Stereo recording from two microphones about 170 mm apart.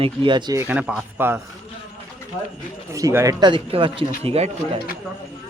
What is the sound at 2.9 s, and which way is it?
Speech, 20° right (ahead or behind).